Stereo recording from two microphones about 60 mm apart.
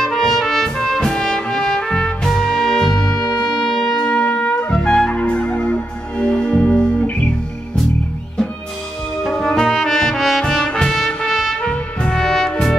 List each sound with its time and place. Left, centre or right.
0.0 s trumpet: centre; by 6.2 s left
6.2 s music: centre
9.2 s brass instrument: centre